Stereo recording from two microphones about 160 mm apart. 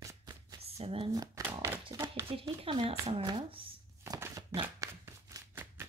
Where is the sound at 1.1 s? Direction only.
20° right (ahead or behind).